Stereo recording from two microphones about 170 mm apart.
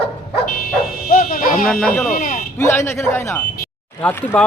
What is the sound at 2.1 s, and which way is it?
Speech, 55° left (ahead or behind).